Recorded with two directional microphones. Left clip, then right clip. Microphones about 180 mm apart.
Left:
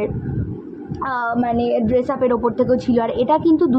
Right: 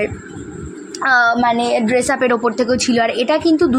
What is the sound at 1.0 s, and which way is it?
A woman's voice, 20° right (ahead or behind).